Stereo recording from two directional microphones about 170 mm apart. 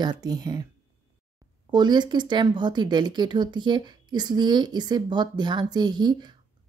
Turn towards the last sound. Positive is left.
turn(degrees=-25)  # may be behind; listen again after turning